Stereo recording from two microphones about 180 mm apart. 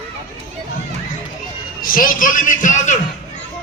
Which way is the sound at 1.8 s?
50° left (ahead or behind).